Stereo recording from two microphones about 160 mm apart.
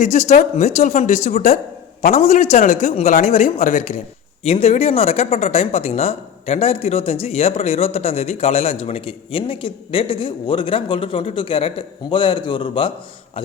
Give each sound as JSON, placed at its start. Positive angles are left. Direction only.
{"t": 0.0, "sound": "a man's voice", "side_deg": 45}
{"t": 4.4, "sound": "speech", "side_deg": 40}